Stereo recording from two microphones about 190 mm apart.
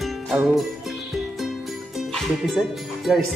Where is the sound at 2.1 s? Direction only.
Centre (ahead or behind).